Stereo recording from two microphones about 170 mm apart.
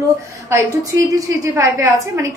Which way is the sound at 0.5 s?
20° right (ahead or behind).